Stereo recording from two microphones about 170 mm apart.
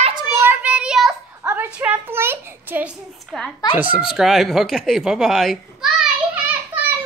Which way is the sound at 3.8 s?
10° right (ahead or behind).